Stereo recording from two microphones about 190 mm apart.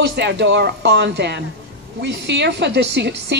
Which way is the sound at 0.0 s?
65° right (ahead or behind).